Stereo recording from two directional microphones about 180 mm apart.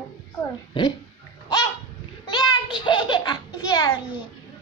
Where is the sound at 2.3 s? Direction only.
25° left (ahead or behind).